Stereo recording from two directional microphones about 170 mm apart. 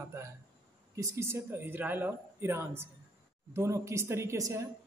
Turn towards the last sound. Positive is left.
turn(degrees=-15)  # may be behind; listen again after turning